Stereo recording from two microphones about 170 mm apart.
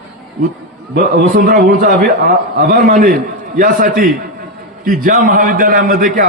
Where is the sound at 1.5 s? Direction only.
55° right (ahead or behind).